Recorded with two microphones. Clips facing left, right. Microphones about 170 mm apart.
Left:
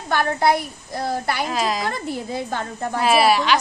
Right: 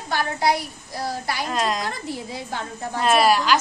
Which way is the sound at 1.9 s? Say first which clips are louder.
Left 4 dB; 55° left (ahead or behind).